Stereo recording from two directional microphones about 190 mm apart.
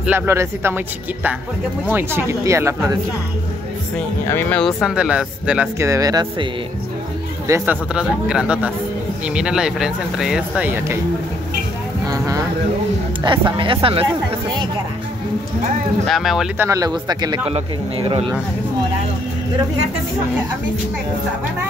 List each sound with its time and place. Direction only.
0.0 s speech: 10° right (ahead or behind)
4.3 s speech: 10° left (ahead or behind); by 6.2 s 20° right (ahead or behind)
7.4 s speech: 10° right (ahead or behind)
12.1 s vehicle: 20° right (ahead or behind)
13.3 s speech: 25° right (ahead or behind)
16.1 s speech: centre (ahead or behind)
16.6 s speech: 20° right (ahead or behind)